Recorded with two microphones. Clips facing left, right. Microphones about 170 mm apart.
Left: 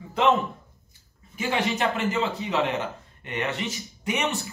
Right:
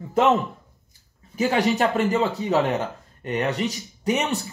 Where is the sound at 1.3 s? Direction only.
40° right (ahead or behind).